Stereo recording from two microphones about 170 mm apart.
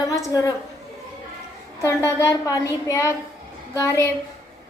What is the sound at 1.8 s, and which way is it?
A woman's voice, 15° left (ahead or behind).